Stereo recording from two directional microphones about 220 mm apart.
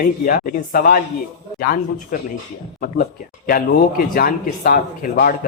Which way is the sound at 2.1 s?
35° left (ahead or behind).